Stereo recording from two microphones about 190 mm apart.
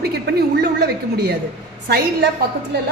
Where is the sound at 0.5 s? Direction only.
60° right (ahead or behind).